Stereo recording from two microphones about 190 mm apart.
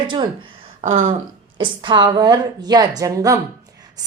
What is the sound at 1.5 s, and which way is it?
Speech, 25° right (ahead or behind).